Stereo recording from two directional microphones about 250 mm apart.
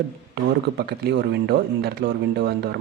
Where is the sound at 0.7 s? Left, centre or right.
Right.